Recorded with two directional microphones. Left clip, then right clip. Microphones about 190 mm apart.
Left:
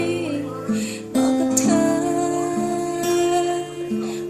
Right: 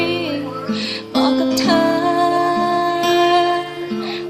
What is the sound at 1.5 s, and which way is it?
Music, 20° left (ahead or behind).